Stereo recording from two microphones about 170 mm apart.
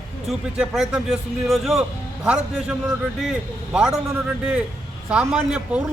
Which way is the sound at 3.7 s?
5° right (ahead or behind).